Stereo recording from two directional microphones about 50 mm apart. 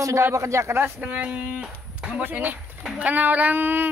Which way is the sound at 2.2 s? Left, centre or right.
Right.